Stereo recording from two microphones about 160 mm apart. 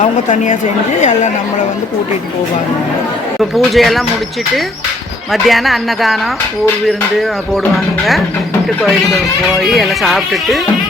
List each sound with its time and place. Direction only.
0.0 s a woman's voice: 50° left (ahead or behind)
3.5 s speech: centre (ahead or behind)
5.3 s speech: centre (ahead or behind)
9.6 s speech: centre (ahead or behind)